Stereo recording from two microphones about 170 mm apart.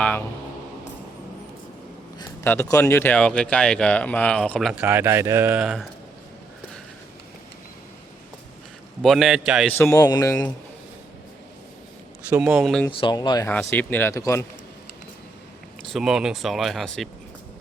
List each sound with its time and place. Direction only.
0.0 s speech: 10° left (ahead or behind)
2.4 s speech: 15° left (ahead or behind)
4.7 s speech: 5° right (ahead or behind)
9.0 s speech: centre (ahead or behind)
9.7 s speech: 15° left (ahead or behind)
12.3 s speech: centre (ahead or behind)
12.9 s speech: 30° left (ahead or behind)
13.5 s speech: 10° left (ahead or behind)
15.8 s speech: centre (ahead or behind)